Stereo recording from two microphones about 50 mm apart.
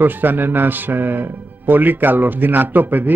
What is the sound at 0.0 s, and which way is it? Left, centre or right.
A man's voice, right.